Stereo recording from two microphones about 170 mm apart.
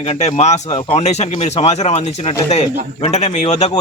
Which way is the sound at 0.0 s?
40° left (ahead or behind).